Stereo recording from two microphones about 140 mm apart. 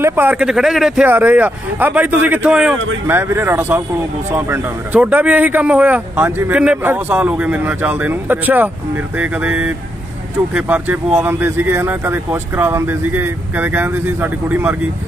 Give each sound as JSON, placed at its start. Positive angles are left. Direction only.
{"t": 0.0, "sound": "speech", "side_deg": -15}
{"t": 1.0, "sound": "speech", "side_deg": -15}